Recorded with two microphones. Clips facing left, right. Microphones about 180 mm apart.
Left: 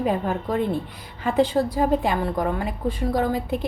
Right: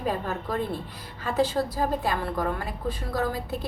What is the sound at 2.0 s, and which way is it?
Speech, 20° left (ahead or behind).